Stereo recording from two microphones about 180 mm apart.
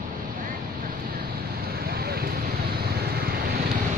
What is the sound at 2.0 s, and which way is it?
Vehicle, 60° right (ahead or behind).